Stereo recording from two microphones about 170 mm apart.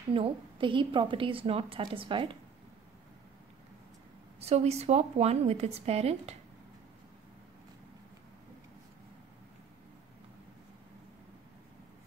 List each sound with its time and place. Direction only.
0.1 s a woman's voice: 30° right (ahead or behind)
4.4 s a woman's voice: 40° right (ahead or behind)